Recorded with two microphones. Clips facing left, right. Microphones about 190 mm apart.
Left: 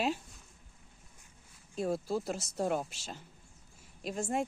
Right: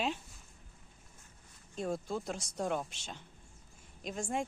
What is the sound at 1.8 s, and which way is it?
Speech, 5° left (ahead or behind).